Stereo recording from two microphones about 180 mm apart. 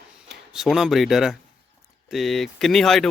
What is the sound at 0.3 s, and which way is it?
Speech, 5° right (ahead or behind).